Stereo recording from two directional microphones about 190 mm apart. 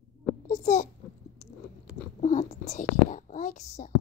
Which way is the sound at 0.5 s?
40° left (ahead or behind).